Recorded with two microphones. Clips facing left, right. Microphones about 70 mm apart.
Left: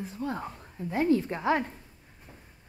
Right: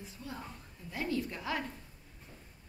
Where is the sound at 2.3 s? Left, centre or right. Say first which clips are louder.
Left 3 dB; left.